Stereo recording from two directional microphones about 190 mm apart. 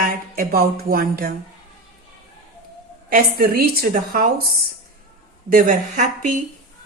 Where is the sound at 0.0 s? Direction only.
50° right (ahead or behind).